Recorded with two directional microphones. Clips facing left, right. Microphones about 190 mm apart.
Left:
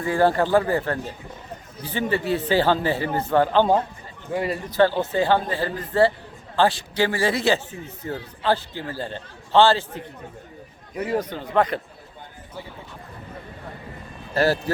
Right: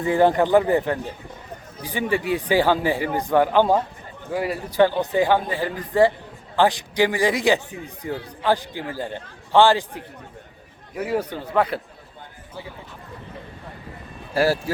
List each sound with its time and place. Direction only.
0.0 s speech: 20° right (ahead or behind)
14.3 s speech: 10° right (ahead or behind)